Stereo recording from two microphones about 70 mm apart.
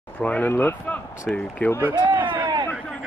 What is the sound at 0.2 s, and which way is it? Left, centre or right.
Speech, centre.